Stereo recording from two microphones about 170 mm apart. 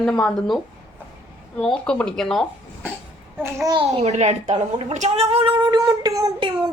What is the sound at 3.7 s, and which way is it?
A child's voice, 35° right (ahead or behind).